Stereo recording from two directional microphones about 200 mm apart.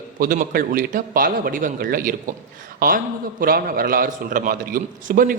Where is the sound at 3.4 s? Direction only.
45° right (ahead or behind).